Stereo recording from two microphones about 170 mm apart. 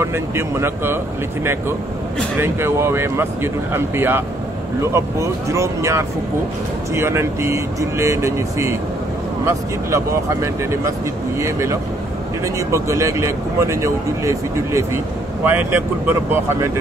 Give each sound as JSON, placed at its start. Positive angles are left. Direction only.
{"t": 0.0, "sound": "speech", "side_deg": -15}
{"t": 2.3, "sound": "speech", "side_deg": -15}